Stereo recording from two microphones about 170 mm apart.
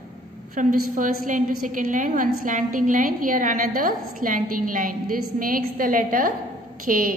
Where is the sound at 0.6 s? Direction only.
50° right (ahead or behind).